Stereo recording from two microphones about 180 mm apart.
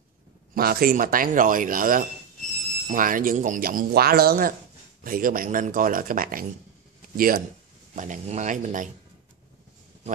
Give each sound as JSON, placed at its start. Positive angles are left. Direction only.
{"t": 0.6, "sound": "speech", "side_deg": -55}